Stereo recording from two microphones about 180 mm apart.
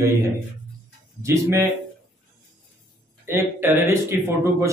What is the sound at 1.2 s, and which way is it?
Speech, 15° right (ahead or behind).